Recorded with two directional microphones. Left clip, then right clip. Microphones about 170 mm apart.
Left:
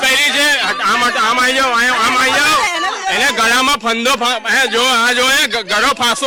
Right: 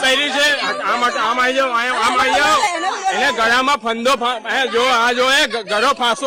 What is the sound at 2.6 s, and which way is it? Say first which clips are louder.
Snake: left 2 dB; 15° right (ahead or behind).